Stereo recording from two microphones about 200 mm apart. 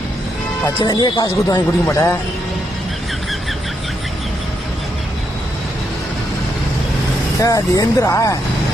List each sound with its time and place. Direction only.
0.8 s speech: 20° left (ahead or behind)
7.4 s speech: 15° left (ahead or behind)